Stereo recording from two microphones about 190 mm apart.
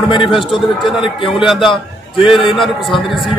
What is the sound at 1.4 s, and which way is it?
Speech, centre (ahead or behind).